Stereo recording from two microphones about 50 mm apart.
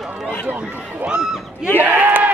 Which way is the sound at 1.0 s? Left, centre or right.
Centre.